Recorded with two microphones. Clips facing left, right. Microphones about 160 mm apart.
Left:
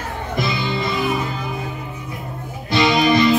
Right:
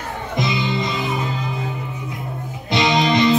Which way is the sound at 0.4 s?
20° right (ahead or behind).